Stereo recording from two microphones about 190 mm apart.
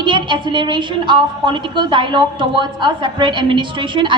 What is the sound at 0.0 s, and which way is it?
A woman's voice, 25° right (ahead or behind).